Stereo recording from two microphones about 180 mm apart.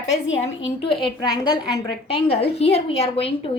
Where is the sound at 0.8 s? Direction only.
25° left (ahead or behind).